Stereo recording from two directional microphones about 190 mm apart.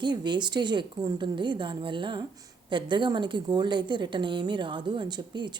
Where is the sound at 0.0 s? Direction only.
25° right (ahead or behind).